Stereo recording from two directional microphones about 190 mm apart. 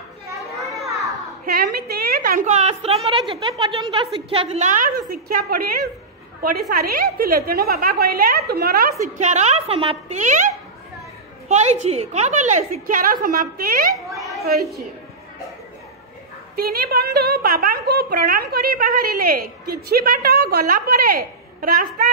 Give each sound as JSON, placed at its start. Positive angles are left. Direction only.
{"t": 1.4, "sound": "a woman's voice", "side_deg": -50}
{"t": 9.2, "sound": "a woman's voice", "side_deg": -35}
{"t": 11.4, "sound": "a woman's voice", "side_deg": -35}
{"t": 13.9, "sound": "chatter", "side_deg": 0}
{"t": 14.4, "sound": "a woman's voice", "side_deg": -55}
{"t": 16.5, "sound": "a woman's voice", "side_deg": -50}